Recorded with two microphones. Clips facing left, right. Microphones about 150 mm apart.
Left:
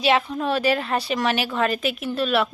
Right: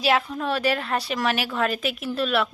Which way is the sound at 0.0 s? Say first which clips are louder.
Left 2 dB; centre (ahead or behind).